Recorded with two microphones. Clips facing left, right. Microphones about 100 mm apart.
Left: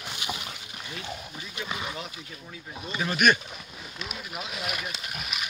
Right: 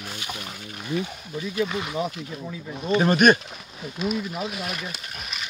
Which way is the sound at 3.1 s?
35° right (ahead or behind).